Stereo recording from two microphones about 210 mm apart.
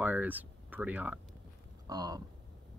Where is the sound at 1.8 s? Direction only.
20° right (ahead or behind).